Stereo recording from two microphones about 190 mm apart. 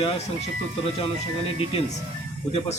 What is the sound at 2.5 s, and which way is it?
Speech, 35° left (ahead or behind).